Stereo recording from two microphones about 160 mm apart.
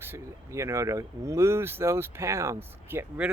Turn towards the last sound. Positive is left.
turn(degrees=-10)  # may be behind; listen again after turning